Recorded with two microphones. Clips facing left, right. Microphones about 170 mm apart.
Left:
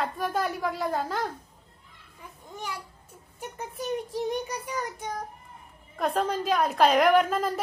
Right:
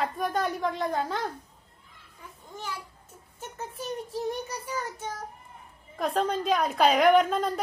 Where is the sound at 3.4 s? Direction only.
15° left (ahead or behind).